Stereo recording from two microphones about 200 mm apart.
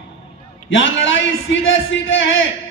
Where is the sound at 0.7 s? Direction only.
70° left (ahead or behind).